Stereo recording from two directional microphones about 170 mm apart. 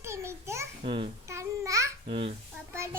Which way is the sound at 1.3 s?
15° right (ahead or behind).